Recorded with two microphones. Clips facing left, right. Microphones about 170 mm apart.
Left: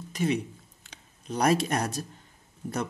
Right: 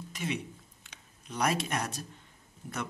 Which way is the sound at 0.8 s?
35° left (ahead or behind).